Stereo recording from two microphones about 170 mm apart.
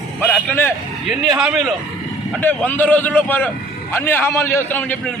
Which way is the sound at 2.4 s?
10° left (ahead or behind).